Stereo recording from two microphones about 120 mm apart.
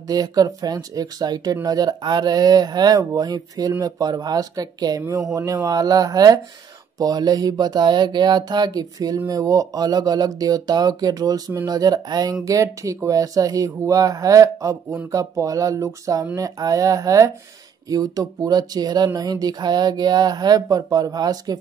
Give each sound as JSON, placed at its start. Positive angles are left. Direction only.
{"t": 0.1, "sound": "speech", "side_deg": -30}